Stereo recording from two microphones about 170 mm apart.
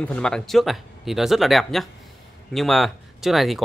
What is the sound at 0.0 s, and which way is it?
Speech, 5° left (ahead or behind).